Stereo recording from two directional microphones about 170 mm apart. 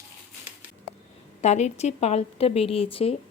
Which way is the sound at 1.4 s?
40° left (ahead or behind).